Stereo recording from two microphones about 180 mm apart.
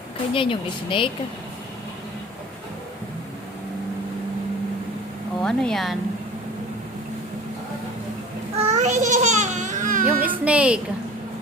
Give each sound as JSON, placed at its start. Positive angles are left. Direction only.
{"t": 0.3, "sound": "speech", "side_deg": 30}
{"t": 5.4, "sound": "speech", "side_deg": 5}
{"t": 8.5, "sound": "babbling", "side_deg": -40}
{"t": 10.4, "sound": "a woman's voice", "side_deg": -5}